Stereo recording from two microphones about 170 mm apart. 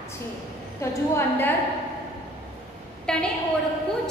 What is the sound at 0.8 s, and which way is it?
Speech, 15° left (ahead or behind).